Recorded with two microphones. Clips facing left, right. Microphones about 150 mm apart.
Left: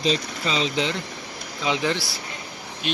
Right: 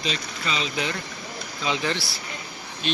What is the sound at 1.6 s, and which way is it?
Speech, 15° left (ahead or behind).